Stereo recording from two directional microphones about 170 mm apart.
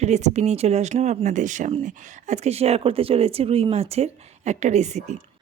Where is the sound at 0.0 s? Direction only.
40° right (ahead or behind).